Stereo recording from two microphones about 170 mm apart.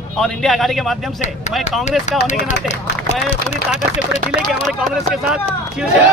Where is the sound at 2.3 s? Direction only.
45° left (ahead or behind).